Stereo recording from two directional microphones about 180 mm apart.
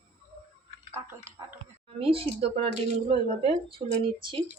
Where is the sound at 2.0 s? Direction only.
30° right (ahead or behind).